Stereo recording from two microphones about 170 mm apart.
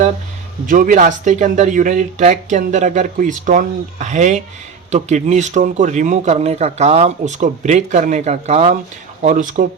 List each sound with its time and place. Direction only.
0.7 s speech: 50° right (ahead or behind)